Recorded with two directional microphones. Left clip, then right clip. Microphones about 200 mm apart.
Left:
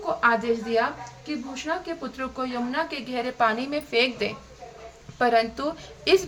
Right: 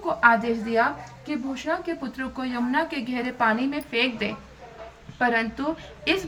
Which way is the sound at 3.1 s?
30° left (ahead or behind).